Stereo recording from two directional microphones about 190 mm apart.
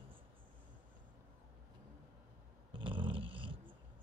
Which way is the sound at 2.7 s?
25° right (ahead or behind).